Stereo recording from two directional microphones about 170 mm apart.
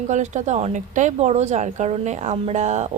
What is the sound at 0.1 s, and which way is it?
A woman's voice, 45° right (ahead or behind).